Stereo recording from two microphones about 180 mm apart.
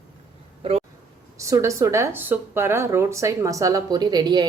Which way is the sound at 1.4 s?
15° right (ahead or behind).